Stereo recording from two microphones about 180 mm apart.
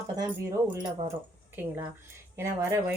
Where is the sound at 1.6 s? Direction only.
10° right (ahead or behind).